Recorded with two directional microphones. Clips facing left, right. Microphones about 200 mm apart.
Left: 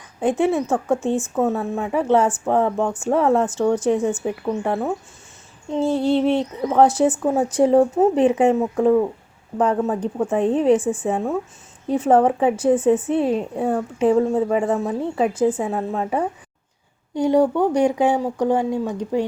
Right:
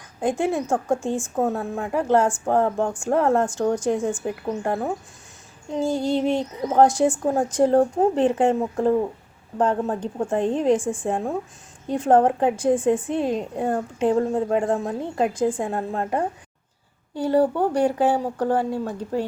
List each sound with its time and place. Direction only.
0.0 s a woman's voice: 5° left (ahead or behind)
5.8 s female singing: 35° left (ahead or behind)
6.3 s a woman's voice: centre (ahead or behind)
17.2 s speech: 15° left (ahead or behind)
17.4 s speech: 10° right (ahead or behind)
17.7 s speech: 10° left (ahead or behind)